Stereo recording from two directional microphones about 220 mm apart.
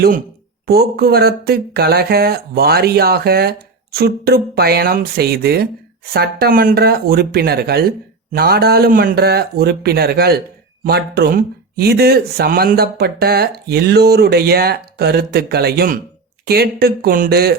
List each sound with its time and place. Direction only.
0.7 s speech: 45° right (ahead or behind)